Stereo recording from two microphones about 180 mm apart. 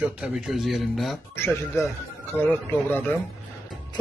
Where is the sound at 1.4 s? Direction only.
15° left (ahead or behind).